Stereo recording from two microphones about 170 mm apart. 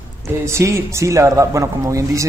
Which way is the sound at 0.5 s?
15° right (ahead or behind).